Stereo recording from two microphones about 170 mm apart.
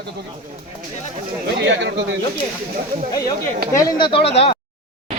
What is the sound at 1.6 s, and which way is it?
Speech, 90° right.